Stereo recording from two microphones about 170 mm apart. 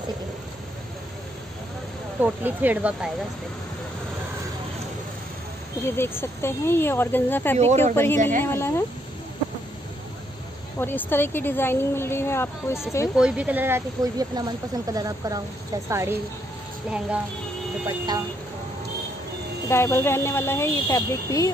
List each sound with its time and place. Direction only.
2.2 s speech: 10° right (ahead or behind)
5.9 s a woman's voice: 15° left (ahead or behind)
7.5 s speech: 40° right (ahead or behind)
7.9 s a woman's voice: 15° left (ahead or behind)
10.8 s a woman's voice: 10° left (ahead or behind)
13.1 s speech: 5° right (ahead or behind)
17.8 s speech: 20° right (ahead or behind)
19.7 s a woman's voice: 15° left (ahead or behind)